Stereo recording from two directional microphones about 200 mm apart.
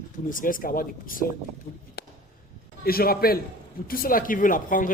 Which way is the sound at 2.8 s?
50° left (ahead or behind).